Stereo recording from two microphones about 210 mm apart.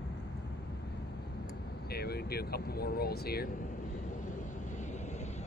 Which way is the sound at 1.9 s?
50° left (ahead or behind).